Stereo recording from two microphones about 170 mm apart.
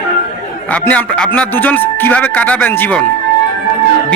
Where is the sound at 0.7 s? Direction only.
10° left (ahead or behind).